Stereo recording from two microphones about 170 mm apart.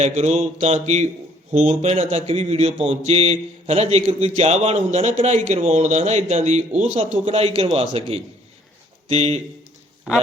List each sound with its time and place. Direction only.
0.0 s speech: 40° right (ahead or behind)